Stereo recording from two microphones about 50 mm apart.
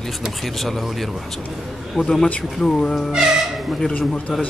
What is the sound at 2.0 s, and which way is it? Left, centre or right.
Speech, centre.